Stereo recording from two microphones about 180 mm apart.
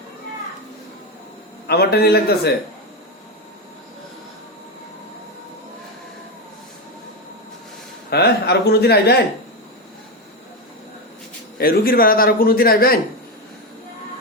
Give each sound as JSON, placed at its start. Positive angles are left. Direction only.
{"t": 1.6, "sound": "a man's voice", "side_deg": 65}
{"t": 8.1, "sound": "a man's voice", "side_deg": 65}
{"t": 11.5, "sound": "a man's voice", "side_deg": 55}